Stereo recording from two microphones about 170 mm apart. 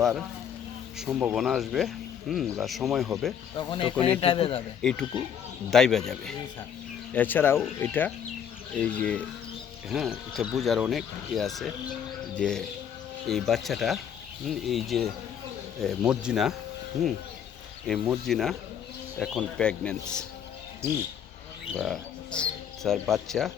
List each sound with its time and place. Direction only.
0.0 s speech: 5° right (ahead or behind)
3.6 s a man's voice: 30° left (ahead or behind)
4.8 s speech: 5° left (ahead or behind)
18.0 s speech: centre (ahead or behind)
21.8 s speech: 5° left (ahead or behind)